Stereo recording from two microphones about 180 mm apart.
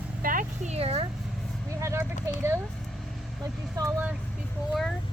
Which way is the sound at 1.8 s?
15° right (ahead or behind).